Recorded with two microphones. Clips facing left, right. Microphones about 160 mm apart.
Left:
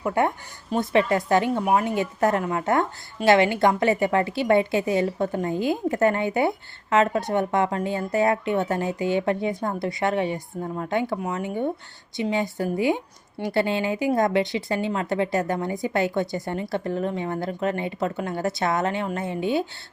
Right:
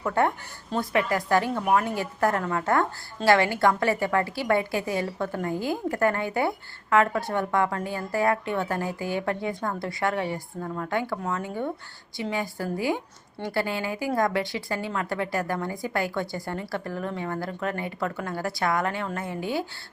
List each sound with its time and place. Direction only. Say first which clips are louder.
0.0 s speech: left 1 dB; 15° left (ahead or behind)